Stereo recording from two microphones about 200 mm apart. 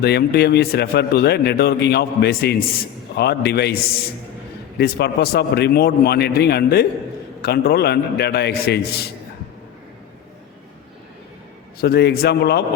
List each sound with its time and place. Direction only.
0.0 s speech: 55° left (ahead or behind)
11.8 s speech: 50° left (ahead or behind)